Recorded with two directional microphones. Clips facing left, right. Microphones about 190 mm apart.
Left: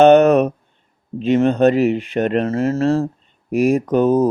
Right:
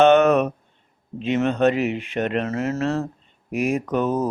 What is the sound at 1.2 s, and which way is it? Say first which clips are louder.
Speech: left 5 dB; 35° left (ahead or behind).